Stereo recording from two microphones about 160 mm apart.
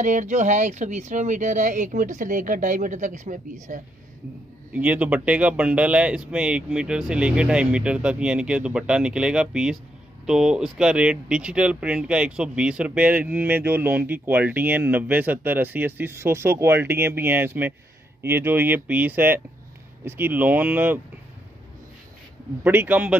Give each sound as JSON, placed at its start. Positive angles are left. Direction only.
{"t": 0.0, "sound": "speech", "side_deg": -50}
{"t": 4.7, "sound": "speech", "side_deg": -10}
{"t": 22.6, "sound": "speech", "side_deg": -10}